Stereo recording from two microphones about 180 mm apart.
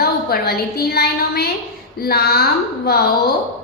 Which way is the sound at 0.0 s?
60° left (ahead or behind).